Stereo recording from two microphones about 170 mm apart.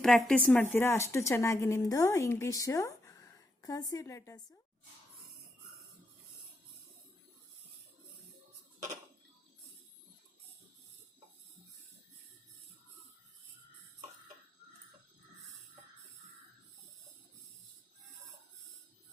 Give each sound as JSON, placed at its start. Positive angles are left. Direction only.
{"t": 0.0, "sound": "speech", "side_deg": 0}